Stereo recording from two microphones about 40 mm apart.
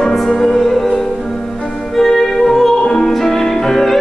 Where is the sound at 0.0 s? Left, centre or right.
Centre.